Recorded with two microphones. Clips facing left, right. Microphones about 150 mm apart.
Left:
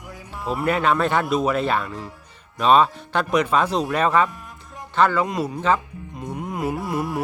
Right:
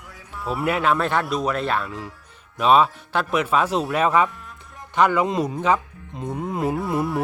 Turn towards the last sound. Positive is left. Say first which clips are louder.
# right 2 dB
turn(degrees=-25)  # may be behind; listen again after turning